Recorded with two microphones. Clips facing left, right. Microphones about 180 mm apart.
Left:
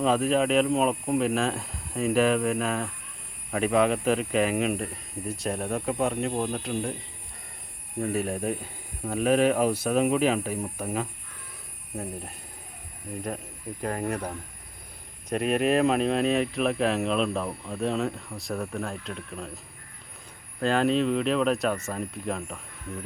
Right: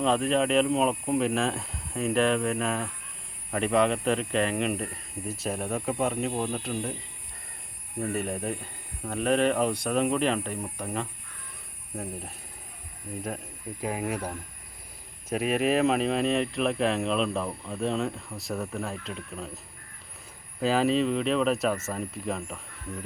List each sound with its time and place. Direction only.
0.0 s speech: 5° left (ahead or behind)
8.0 s speech: centre (ahead or behind)
13.8 s speech: 5° right (ahead or behind)
20.6 s speech: 5° right (ahead or behind)